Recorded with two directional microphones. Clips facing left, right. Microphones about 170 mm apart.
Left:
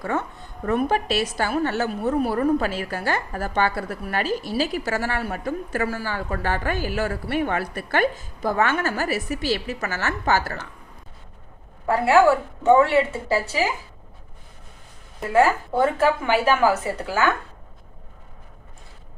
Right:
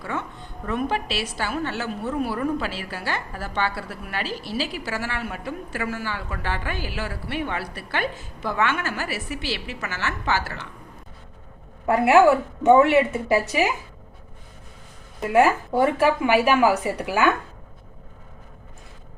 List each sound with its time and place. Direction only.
0.0 s a woman's voice: 45° left (ahead or behind)
11.9 s a woman's voice: 20° right (ahead or behind)
15.3 s speech: 15° right (ahead or behind)